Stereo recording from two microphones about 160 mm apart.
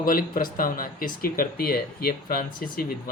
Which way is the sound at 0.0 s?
65° left (ahead or behind).